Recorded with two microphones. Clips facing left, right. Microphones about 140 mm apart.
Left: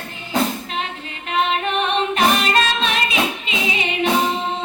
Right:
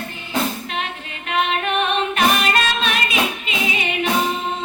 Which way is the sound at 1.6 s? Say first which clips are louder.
Even; 30° left (ahead or behind).